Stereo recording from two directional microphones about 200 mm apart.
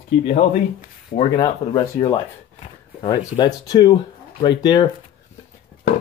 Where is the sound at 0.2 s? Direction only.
40° left (ahead or behind).